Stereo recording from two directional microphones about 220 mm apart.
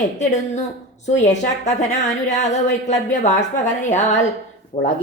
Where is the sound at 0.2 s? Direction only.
35° left (ahead or behind).